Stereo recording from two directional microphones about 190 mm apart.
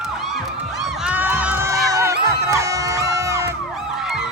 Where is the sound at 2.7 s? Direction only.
15° right (ahead or behind).